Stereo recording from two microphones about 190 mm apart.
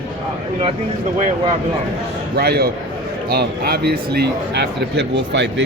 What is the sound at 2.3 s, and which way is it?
Speech, 55° right (ahead or behind).